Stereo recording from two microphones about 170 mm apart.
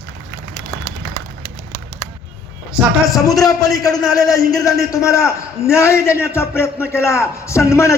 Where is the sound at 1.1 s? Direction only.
35° right (ahead or behind).